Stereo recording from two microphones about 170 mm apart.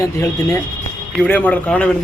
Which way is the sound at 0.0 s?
15° left (ahead or behind).